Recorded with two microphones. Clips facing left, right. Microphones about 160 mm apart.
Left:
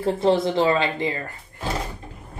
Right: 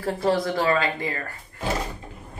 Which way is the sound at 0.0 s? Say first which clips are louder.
Left 4 dB; 20° left (ahead or behind).